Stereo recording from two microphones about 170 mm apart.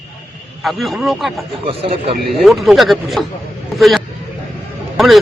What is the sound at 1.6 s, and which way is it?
Speech, 35° right (ahead or behind).